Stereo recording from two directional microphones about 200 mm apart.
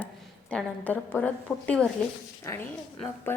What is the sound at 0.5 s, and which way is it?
A woman's voice, 10° left (ahead or behind).